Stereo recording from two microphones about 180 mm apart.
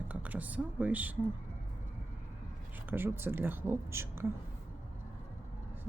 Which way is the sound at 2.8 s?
10° right (ahead or behind).